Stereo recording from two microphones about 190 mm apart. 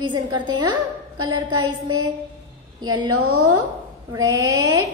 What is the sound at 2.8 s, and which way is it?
Speech, 20° right (ahead or behind).